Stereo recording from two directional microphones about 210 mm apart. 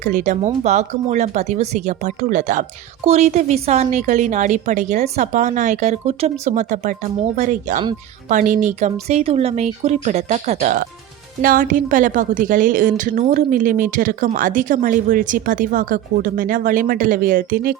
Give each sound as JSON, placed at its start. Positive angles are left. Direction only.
{"t": 0.0, "sound": "speech", "side_deg": -35}